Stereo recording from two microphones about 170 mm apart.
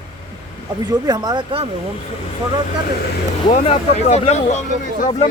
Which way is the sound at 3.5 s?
40° left (ahead or behind).